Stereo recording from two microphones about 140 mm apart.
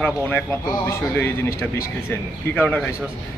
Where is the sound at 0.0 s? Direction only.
15° left (ahead or behind).